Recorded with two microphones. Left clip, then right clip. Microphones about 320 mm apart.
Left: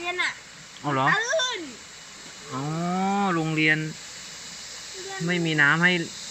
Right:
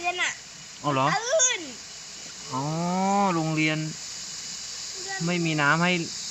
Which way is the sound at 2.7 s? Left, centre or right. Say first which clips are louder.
Right 1 dB; centre.